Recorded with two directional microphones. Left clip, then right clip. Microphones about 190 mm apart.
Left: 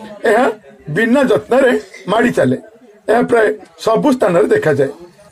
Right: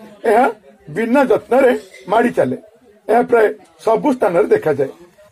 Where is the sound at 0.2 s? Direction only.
20° left (ahead or behind).